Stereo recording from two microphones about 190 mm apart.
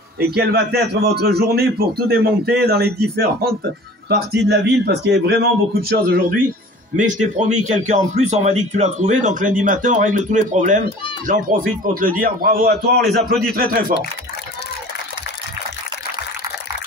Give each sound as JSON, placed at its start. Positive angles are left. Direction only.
{"t": 0.2, "sound": "a man's voice", "side_deg": -55}
{"t": 7.0, "sound": "a man's voice", "side_deg": -40}